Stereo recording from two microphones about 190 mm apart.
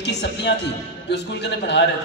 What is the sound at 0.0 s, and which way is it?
A man's voice, 65° left (ahead or behind).